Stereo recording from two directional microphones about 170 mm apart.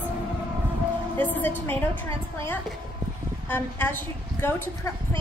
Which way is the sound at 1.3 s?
10° left (ahead or behind).